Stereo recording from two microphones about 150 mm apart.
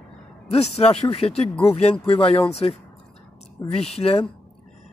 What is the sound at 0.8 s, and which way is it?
Speech, 45° left (ahead or behind).